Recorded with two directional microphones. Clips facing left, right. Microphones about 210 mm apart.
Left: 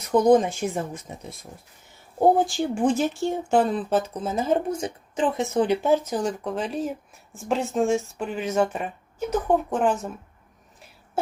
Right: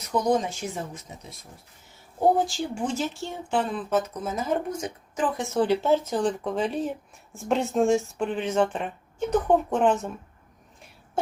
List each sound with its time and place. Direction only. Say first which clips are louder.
0.1 s speech: left 6 dB; 50° left (ahead or behind)
2.5 s speech: left 6 dB; 55° left (ahead or behind); by 10.1 s centre (ahead or behind)